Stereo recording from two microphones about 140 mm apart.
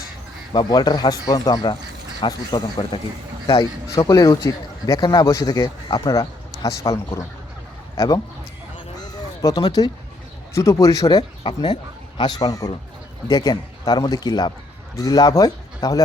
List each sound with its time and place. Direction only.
0.5 s speech: 30° left (ahead or behind)
9.4 s speech: 30° left (ahead or behind)
11.2 s speech: 35° left (ahead or behind)